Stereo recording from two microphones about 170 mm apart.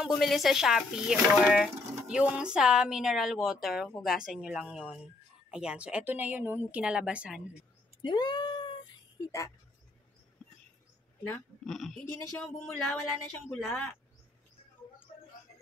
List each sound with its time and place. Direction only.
0.2 s a woman's voice: centre (ahead or behind)
8.0 s cat: 25° left (ahead or behind)
9.2 s speech: 20° left (ahead or behind)
11.6 s speech: centre (ahead or behind)